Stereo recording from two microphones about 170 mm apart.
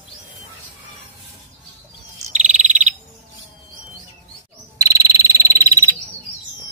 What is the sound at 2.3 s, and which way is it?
Bird, 45° right (ahead or behind).